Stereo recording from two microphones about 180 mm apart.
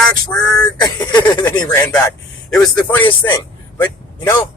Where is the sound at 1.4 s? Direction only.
10° left (ahead or behind).